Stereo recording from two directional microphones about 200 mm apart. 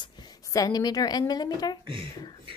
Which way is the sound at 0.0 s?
20° left (ahead or behind).